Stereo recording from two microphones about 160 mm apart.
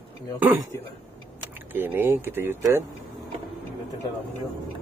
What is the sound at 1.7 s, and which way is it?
A man's voice, 15° right (ahead or behind).